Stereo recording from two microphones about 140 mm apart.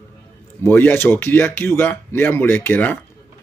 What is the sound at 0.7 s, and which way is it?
Speech, 15° left (ahead or behind).